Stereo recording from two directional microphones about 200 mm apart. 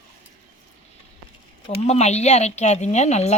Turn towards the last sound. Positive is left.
turn(degrees=35)  # may be behind; listen again after turning